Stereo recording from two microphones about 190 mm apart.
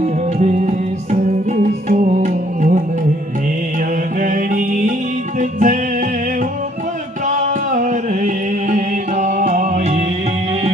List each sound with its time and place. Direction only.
0.3 s music: 35° right (ahead or behind)
4.2 s music: 45° right (ahead or behind)
7.3 s music: 40° right (ahead or behind)